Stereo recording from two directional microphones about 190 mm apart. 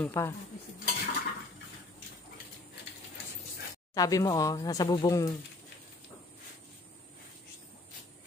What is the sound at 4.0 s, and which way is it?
Speech, 20° left (ahead or behind).